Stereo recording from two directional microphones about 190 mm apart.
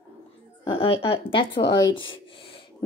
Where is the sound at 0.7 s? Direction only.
30° left (ahead or behind).